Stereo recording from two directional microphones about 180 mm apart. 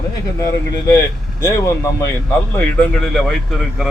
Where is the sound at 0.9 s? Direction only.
20° left (ahead or behind).